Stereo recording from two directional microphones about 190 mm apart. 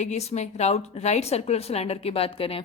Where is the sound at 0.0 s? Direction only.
35° left (ahead or behind).